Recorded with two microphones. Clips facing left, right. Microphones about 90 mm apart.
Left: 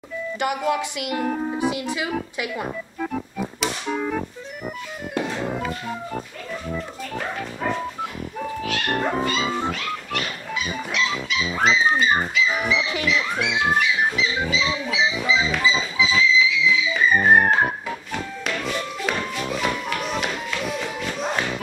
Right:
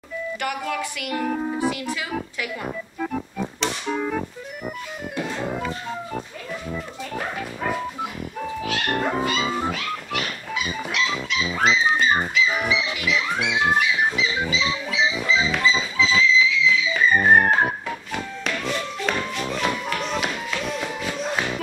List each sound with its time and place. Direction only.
0.4 s music: 20° left (ahead or behind)
1.2 s music: centre (ahead or behind)
1.6 s music: 20° left (ahead or behind)
3.0 s music: centre (ahead or behind)
6.7 s music: 5° right (ahead or behind)